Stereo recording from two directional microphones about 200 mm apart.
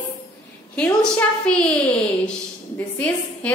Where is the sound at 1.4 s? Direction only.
5° left (ahead or behind).